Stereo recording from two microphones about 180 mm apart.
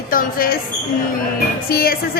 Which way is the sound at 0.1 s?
55° left (ahead or behind).